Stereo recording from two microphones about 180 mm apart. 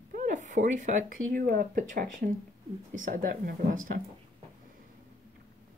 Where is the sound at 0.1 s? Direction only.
45° right (ahead or behind).